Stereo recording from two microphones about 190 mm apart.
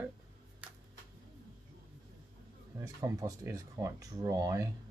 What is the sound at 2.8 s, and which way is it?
Speech, 20° right (ahead or behind).